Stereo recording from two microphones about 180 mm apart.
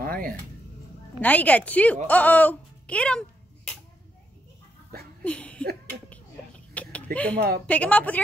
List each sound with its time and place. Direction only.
0.0 s music: 55° right (ahead or behind)
1.2 s a woman's voice: 10° left (ahead or behind)
5.2 s a sound: 5° left (ahead or behind)
6.7 s a sound: 5° left (ahead or behind)
7.3 s a woman's voice: 60° right (ahead or behind)
7.6 s a woman's voice: 10° left (ahead or behind)